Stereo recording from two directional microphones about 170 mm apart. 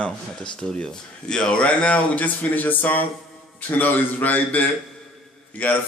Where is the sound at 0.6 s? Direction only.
5° left (ahead or behind).